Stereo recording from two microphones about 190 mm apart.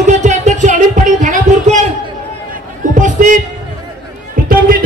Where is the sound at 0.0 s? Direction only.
40° right (ahead or behind).